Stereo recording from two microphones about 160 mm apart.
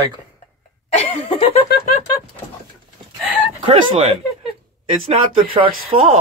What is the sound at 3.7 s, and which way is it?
Speech, 30° right (ahead or behind).